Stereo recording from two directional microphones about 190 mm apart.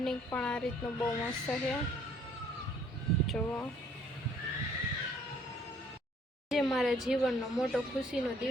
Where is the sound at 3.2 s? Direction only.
5° left (ahead or behind).